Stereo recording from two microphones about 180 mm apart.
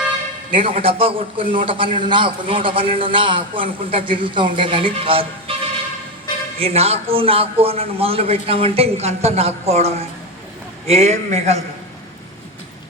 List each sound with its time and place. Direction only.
0.6 s a man's voice: 30° right (ahead or behind)
6.6 s a man's voice: 35° right (ahead or behind)